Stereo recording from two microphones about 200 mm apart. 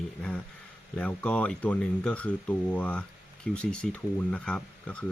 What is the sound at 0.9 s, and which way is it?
Speech, 5° left (ahead or behind).